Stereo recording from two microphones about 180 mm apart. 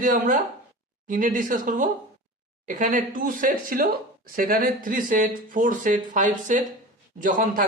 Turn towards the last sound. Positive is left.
turn(degrees=-50)  # may be behind; listen again after turning